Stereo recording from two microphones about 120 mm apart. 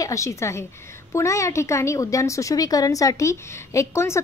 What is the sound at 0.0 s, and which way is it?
A woman's voice, 25° left (ahead or behind).